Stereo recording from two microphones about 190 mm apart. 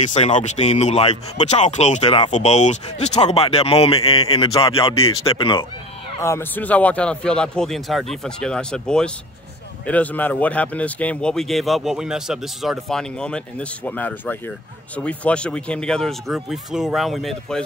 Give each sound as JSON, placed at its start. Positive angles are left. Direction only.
{"t": 0.1, "sound": "speech", "side_deg": 35}
{"t": 6.2, "sound": "speech", "side_deg": 10}